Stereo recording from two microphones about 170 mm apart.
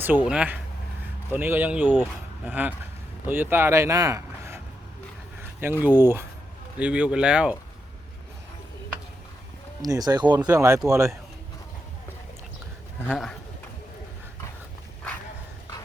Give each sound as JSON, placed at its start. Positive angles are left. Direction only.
{"t": 0.3, "sound": "speech", "side_deg": -10}
{"t": 5.4, "sound": "a sound", "side_deg": -15}
{"t": 5.8, "sound": "speech", "side_deg": -10}
{"t": 9.8, "sound": "speech", "side_deg": -20}
{"t": 13.1, "sound": "a man's voice", "side_deg": 0}